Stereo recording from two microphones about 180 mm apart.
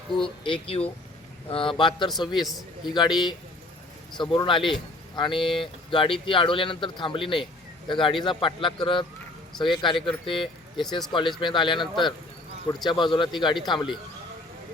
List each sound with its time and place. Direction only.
0.1 s speech: 30° left (ahead or behind)
2.4 s a man's voice: centre (ahead or behind)
2.8 s speech: 25° left (ahead or behind)
4.2 s speech: 25° left (ahead or behind)